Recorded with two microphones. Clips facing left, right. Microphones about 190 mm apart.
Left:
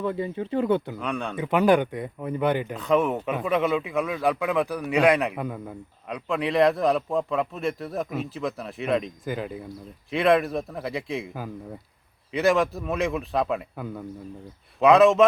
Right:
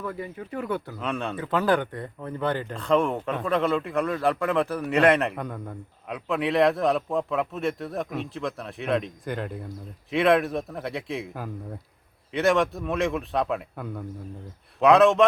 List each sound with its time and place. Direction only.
0.0 s speech: 25° left (ahead or behind)
0.9 s a man's voice: centre (ahead or behind)
1.4 s speech: 15° left (ahead or behind)
2.7 s a man's voice: 5° left (ahead or behind)